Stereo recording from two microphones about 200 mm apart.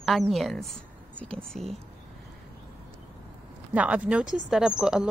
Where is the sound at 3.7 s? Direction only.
5° right (ahead or behind).